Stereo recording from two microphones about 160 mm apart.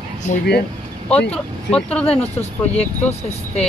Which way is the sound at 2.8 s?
40° left (ahead or behind).